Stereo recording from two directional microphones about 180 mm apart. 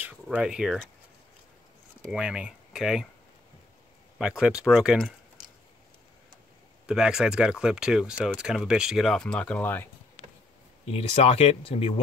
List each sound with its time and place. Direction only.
0.0 s speech: 5° right (ahead or behind)
2.0 s speech: 5° right (ahead or behind)
4.2 s speech: 5° right (ahead or behind)
6.9 s speech: 5° right (ahead or behind)
10.9 s speech: 35° left (ahead or behind)